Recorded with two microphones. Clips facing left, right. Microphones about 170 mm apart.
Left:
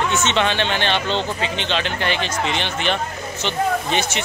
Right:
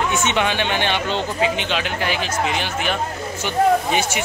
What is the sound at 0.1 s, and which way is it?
Speech, 10° right (ahead or behind).